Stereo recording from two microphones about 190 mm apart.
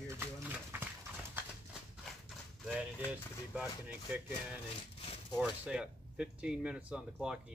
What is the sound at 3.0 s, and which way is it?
Speech, 5° right (ahead or behind).